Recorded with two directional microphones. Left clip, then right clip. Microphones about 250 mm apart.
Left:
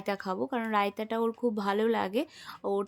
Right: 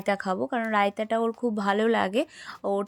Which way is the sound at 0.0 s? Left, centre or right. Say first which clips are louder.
Right 6 dB; centre.